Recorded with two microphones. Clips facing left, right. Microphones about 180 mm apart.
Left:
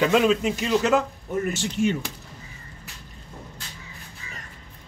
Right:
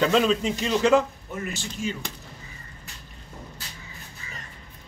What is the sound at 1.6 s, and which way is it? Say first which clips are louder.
Speech: left 8 dB; 65° left (ahead or behind).